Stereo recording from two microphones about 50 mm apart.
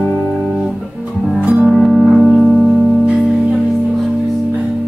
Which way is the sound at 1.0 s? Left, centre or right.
Right.